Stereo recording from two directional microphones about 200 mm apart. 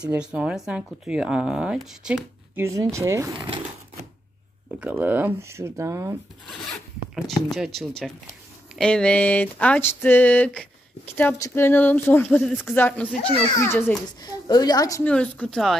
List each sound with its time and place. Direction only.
0.0 s speech: 5° right (ahead or behind)
4.7 s speech: 10° right (ahead or behind)
6.5 s zipper: centre (ahead or behind)
7.5 s speech: centre (ahead or behind)
8.7 s a sound: 5° left (ahead or behind)
13.3 s a child's voice: 30° left (ahead or behind)
13.6 s a sound: 10° left (ahead or behind)